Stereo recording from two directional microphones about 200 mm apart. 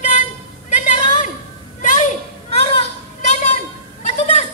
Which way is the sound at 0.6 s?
40° left (ahead or behind).